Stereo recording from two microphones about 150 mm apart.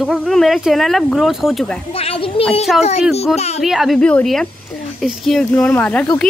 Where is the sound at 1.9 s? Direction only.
40° left (ahead or behind).